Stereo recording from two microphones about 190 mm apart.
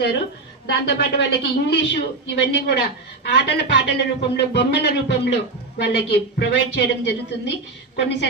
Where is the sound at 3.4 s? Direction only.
60° left (ahead or behind).